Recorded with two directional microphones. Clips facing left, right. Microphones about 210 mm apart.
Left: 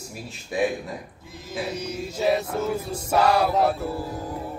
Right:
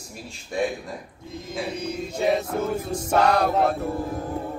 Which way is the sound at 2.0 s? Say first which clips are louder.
Even; 5° left (ahead or behind).